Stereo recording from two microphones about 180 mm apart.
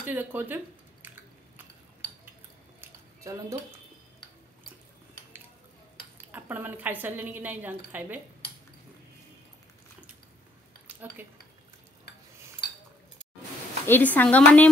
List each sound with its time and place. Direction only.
0.0 s a woman's voice: 10° right (ahead or behind)
2.8 s squish: 15° right (ahead or behind)
6.3 s a woman's voice: 10° right (ahead or behind)
10.9 s speech: 10° right (ahead or behind)
13.8 s a woman's voice: 10° left (ahead or behind)